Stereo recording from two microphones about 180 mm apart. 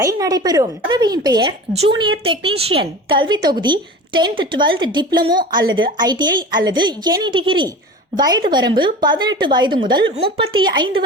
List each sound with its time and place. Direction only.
0.0 s speech: 20° right (ahead or behind)